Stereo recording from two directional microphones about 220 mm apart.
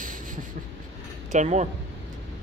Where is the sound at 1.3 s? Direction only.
30° right (ahead or behind).